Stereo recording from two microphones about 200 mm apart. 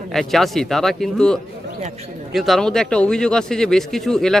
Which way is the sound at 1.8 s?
30° right (ahead or behind).